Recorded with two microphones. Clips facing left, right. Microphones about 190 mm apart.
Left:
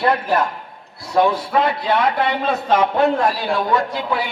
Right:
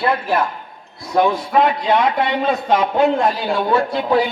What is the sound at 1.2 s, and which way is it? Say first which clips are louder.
A man's voice: right 2 dB; 15° right (ahead or behind).